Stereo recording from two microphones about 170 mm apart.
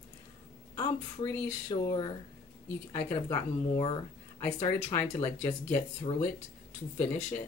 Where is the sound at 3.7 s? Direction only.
30° left (ahead or behind).